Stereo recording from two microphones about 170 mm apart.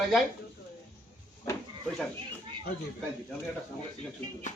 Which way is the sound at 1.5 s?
15° left (ahead or behind).